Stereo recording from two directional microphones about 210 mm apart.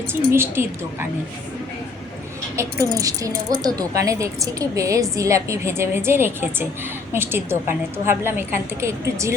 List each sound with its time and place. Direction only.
0.3 s speech: 10° right (ahead or behind)
2.6 s speech: 15° right (ahead or behind)